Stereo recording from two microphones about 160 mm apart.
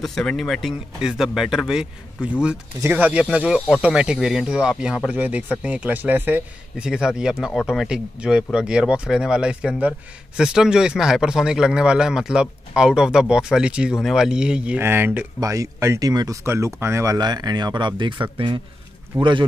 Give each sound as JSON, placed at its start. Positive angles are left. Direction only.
{"t": 0.0, "sound": "speech", "side_deg": 5}